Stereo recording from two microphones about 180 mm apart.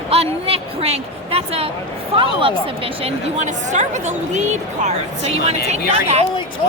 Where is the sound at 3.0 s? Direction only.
40° right (ahead or behind).